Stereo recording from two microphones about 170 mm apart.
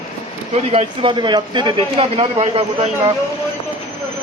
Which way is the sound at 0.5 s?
35° right (ahead or behind).